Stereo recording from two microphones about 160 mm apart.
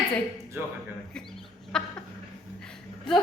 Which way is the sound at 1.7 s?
5° left (ahead or behind).